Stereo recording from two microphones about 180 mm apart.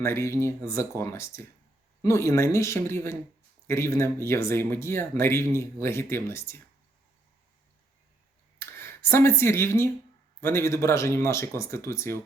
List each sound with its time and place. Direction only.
0.0 s speech: 15° left (ahead or behind)
8.5 s speech: 15° left (ahead or behind)